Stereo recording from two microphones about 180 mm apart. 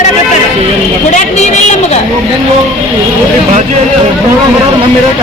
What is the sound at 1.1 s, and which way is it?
Vehicle, 40° left (ahead or behind).